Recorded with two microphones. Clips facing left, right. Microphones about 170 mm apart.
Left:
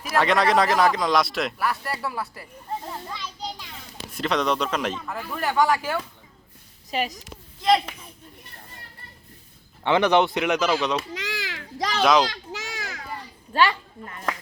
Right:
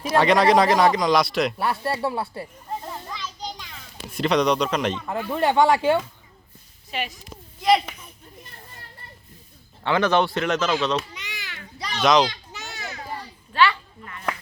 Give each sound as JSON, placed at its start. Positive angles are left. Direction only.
{"t": 0.1, "sound": "speech", "side_deg": 0}
{"t": 1.5, "sound": "speech", "side_deg": -25}
{"t": 4.1, "sound": "speech", "side_deg": 0}
{"t": 5.0, "sound": "speech", "side_deg": -25}
{"t": 6.9, "sound": "a woman's voice", "side_deg": 35}
{"t": 7.6, "sound": "speech", "side_deg": -5}
{"t": 9.8, "sound": "speech", "side_deg": 15}
{"t": 11.1, "sound": "children playing", "side_deg": 90}
{"t": 13.5, "sound": "a child's voice", "side_deg": 40}